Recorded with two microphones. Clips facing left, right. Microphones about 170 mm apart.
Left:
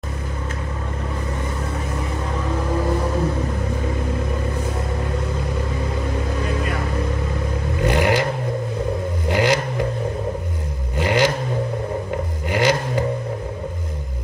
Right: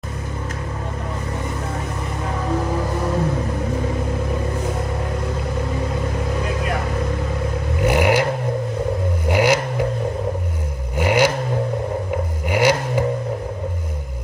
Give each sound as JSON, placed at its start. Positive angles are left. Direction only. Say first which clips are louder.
{"t": 7.8, "sound": "a sound", "louder": "right 2 dB", "side_deg": -10}
{"t": 9.3, "sound": "vehicle", "louder": "right 2 dB", "side_deg": -10}
{"t": 11.0, "sound": "vehicle", "louder": "right 2 dB", "side_deg": -10}
{"t": 12.4, "sound": "vehicle", "louder": "right 2 dB", "side_deg": -10}